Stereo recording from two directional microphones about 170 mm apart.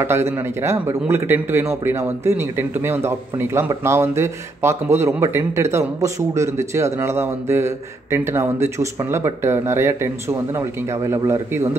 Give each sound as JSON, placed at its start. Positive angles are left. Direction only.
{"t": 0.0, "sound": "a man's voice", "side_deg": -15}